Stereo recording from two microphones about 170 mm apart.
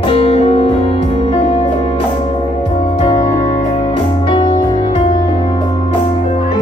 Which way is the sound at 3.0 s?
35° left (ahead or behind).